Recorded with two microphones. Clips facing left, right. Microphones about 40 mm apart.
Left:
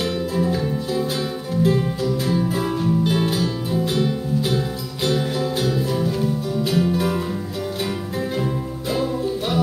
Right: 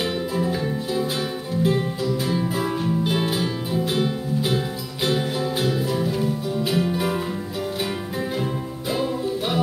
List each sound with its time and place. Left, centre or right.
0.4 s music: centre